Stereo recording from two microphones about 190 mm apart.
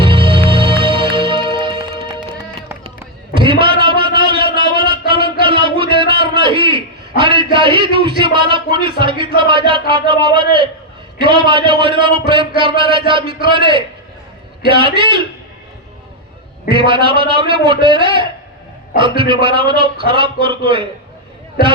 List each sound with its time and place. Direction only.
0.0 s music: 25° right (ahead or behind)
3.4 s a sound: 25° right (ahead or behind)
7.2 s a man's voice: 25° right (ahead or behind)
16.6 s a man's voice: 25° right (ahead or behind)